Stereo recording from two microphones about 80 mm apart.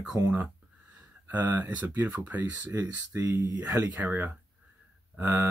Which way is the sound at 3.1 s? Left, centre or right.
Right.